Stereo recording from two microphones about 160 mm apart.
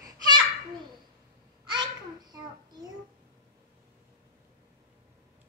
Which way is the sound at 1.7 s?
25° right (ahead or behind).